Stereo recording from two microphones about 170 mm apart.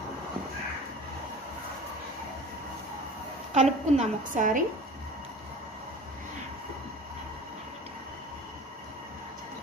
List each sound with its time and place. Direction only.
3.5 s a woman's voice: 45° right (ahead or behind)